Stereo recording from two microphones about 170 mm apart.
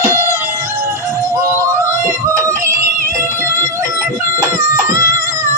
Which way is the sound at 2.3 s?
20° right (ahead or behind).